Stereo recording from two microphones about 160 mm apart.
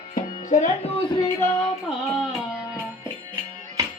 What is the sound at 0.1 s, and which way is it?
Music, 50° left (ahead or behind).